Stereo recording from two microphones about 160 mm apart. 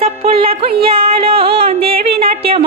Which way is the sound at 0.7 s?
70° right (ahead or behind).